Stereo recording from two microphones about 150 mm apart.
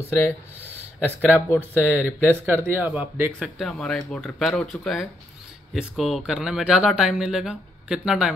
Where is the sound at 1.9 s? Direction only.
15° left (ahead or behind).